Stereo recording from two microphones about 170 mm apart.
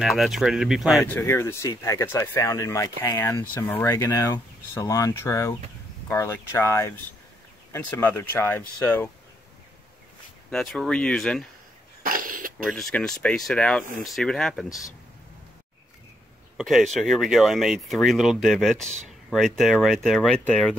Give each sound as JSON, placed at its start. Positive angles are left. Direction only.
{"t": 0.0, "sound": "speech", "side_deg": 0}
{"t": 1.0, "sound": "speech", "side_deg": 15}
{"t": 10.5, "sound": "speech", "side_deg": 5}
{"t": 12.0, "sound": "cough", "side_deg": -55}
{"t": 12.7, "sound": "speech", "side_deg": 5}
{"t": 16.5, "sound": "speech", "side_deg": 0}